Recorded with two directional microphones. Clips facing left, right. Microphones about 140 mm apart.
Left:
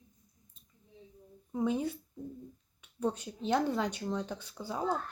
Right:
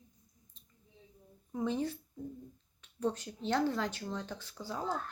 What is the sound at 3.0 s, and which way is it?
Speech, 15° left (ahead or behind).